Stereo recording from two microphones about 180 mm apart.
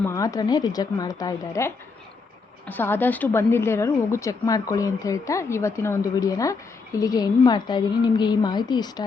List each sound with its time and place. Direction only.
0.0 s a woman's voice: 15° left (ahead or behind)